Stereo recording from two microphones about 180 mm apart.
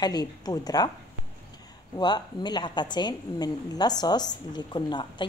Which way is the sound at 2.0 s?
25° left (ahead or behind).